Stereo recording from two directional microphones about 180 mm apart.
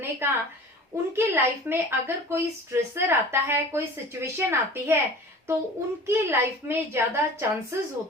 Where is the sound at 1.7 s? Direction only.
15° right (ahead or behind).